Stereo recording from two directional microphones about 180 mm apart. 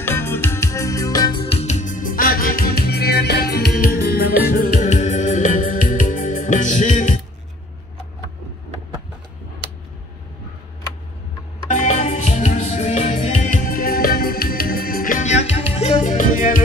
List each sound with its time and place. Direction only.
0.0 s music: 10° left (ahead or behind); by 7.2 s 45° left (ahead or behind)
11.7 s music: 40° left (ahead or behind)